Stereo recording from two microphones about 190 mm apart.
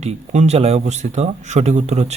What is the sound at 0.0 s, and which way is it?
Speech, 35° right (ahead or behind).